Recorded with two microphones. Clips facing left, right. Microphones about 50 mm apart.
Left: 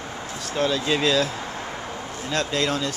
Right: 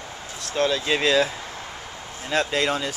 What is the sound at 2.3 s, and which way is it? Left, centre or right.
Speech, centre.